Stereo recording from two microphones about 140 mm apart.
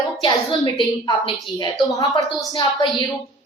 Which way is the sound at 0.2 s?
30° left (ahead or behind).